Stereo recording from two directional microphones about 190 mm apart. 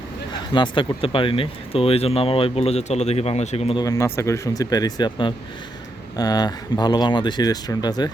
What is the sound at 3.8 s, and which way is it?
Speech, 15° left (ahead or behind).